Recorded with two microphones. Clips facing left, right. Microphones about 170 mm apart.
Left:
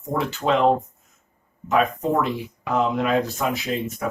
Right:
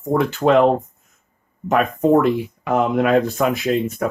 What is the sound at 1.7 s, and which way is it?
Speech, 50° right (ahead or behind).